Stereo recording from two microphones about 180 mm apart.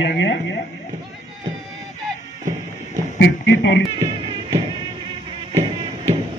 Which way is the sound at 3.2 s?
75° left (ahead or behind).